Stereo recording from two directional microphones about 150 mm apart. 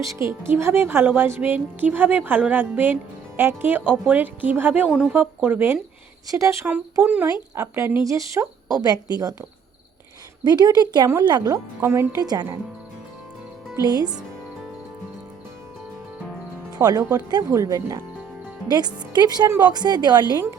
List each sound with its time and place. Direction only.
0.0 s speech: 20° right (ahead or behind)
10.4 s speech: 30° right (ahead or behind)
13.7 s speech: 25° right (ahead or behind)
16.7 s speech: 25° right (ahead or behind)